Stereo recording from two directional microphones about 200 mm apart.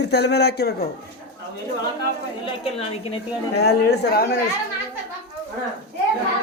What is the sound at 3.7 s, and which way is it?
Speech, 55° left (ahead or behind).